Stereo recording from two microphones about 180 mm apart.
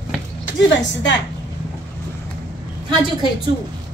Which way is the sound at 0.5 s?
90° left.